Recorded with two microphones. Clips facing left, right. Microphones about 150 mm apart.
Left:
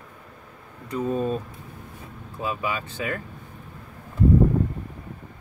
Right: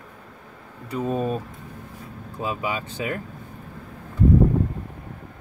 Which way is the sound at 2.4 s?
20° right (ahead or behind).